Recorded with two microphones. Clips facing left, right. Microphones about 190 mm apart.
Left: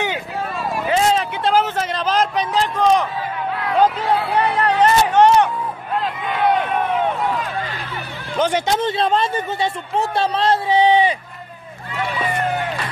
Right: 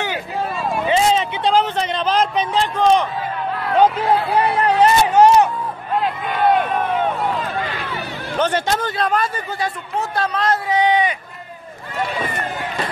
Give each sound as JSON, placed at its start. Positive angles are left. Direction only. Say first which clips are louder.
{"t": 0.6, "sound": "vehicle", "louder": "right 1 dB", "side_deg": 0}
{"t": 3.7, "sound": "music", "louder": "right 2 dB", "side_deg": -5}
{"t": 5.9, "sound": "a sound", "louder": "right 2 dB", "side_deg": -5}
{"t": 8.4, "sound": "a man's voice", "louder": "left 1 dB", "side_deg": 10}